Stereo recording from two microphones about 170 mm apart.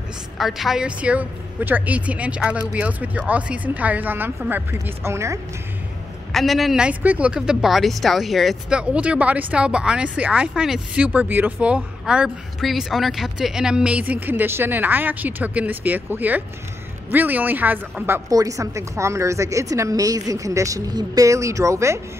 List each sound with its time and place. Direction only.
0.4 s a woman's voice: centre (ahead or behind)
6.3 s a woman's voice: centre (ahead or behind); by 22.0 s 15° right (ahead or behind)